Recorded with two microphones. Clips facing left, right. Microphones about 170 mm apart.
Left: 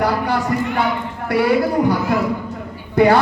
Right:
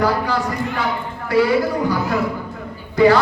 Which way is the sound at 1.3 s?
60° left (ahead or behind).